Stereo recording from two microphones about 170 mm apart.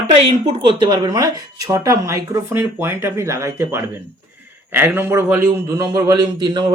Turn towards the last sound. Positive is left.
turn(degrees=-25)  # may be behind; listen again after turning